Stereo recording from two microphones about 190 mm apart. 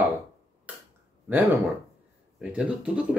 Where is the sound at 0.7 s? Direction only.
5° right (ahead or behind).